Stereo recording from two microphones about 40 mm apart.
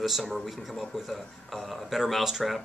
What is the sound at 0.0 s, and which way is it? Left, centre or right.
A man's voice, centre.